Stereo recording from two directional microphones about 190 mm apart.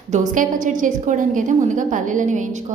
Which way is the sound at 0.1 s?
45° right (ahead or behind).